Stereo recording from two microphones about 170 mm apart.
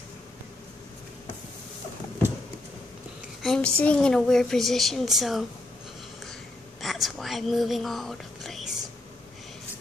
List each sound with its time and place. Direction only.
3.4 s a woman's voice: 5° left (ahead or behind)
6.8 s whispering: centre (ahead or behind)